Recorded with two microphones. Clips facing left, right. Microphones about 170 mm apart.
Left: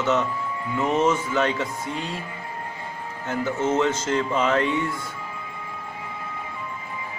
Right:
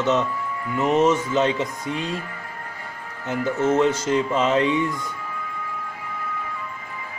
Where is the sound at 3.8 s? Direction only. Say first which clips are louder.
Right 3 dB; 15° right (ahead or behind).